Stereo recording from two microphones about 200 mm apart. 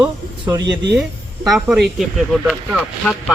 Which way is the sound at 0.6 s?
60° right (ahead or behind).